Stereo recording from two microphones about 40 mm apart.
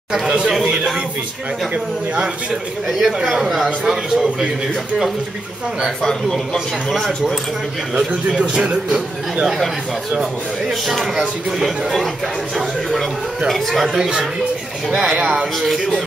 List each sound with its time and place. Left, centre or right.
2.9 s a man's voice: centre
8.4 s a man's voice: right
13.5 s speech: centre
13.9 s a man's voice: centre